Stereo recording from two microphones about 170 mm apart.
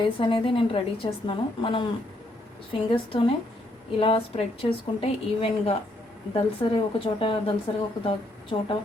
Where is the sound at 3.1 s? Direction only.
30° left (ahead or behind).